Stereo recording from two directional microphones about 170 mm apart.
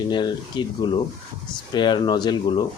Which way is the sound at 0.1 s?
25° left (ahead or behind).